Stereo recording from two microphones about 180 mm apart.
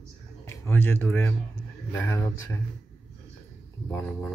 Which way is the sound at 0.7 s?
10° left (ahead or behind).